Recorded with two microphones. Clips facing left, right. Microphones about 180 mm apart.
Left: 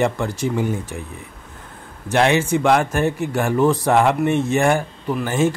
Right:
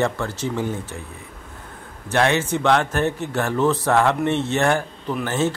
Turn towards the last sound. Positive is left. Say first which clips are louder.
# left 3 dB
turn(degrees=10)  # may be behind; listen again after turning